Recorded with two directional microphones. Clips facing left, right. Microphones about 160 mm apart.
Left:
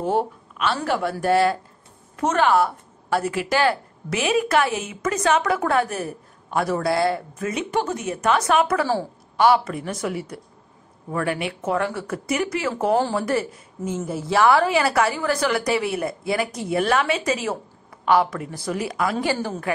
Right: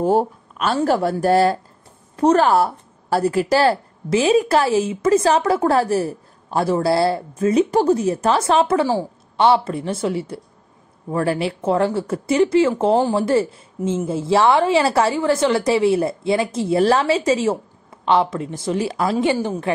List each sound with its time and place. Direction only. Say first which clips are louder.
0.0 s a woman's voice: right 5 dB; 40° right (ahead or behind)
8.8 s a woman's voice: right 3 dB; 15° right (ahead or behind)
9.5 s a woman's voice: right 2 dB; 30° right (ahead or behind)